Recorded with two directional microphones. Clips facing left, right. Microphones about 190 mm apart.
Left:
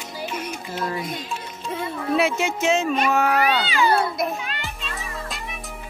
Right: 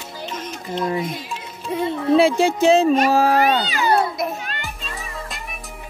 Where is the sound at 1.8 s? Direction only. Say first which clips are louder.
Right 6 dB; 25° right (ahead or behind).